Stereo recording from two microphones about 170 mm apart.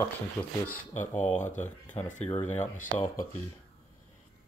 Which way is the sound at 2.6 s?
50° left (ahead or behind).